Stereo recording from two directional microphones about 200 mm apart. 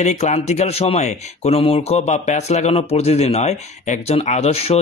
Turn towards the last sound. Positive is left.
turn(degrees=30)  # may be behind; listen again after turning